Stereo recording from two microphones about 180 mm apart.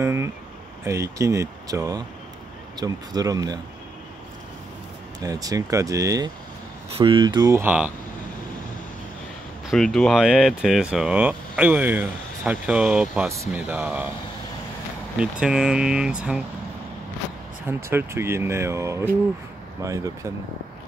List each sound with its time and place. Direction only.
0.0 s a sound: 15° right (ahead or behind)
0.8 s speech: 15° right (ahead or behind)
5.2 s speech: 20° right (ahead or behind)
6.9 s speech: 30° right (ahead or behind); by 7.9 s 10° right (ahead or behind)
9.7 s speech: centre (ahead or behind)
15.1 s speech: 5° right (ahead or behind)
17.8 s speech: 15° right (ahead or behind)